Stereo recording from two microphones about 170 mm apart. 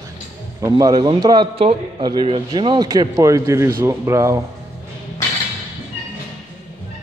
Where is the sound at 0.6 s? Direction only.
20° right (ahead or behind).